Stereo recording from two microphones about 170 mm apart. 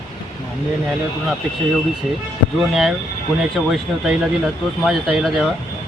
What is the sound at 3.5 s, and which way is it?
Speech, centre (ahead or behind).